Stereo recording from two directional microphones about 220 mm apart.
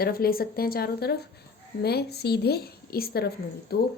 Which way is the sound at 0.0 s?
45° left (ahead or behind).